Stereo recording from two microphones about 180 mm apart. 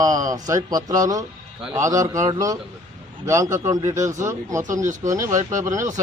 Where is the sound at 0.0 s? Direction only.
20° right (ahead or behind).